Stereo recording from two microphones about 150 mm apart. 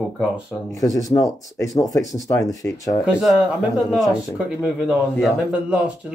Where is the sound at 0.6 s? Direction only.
20° left (ahead or behind).